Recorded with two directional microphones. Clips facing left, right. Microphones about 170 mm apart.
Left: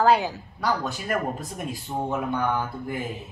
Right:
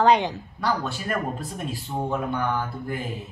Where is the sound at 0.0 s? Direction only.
5° left (ahead or behind).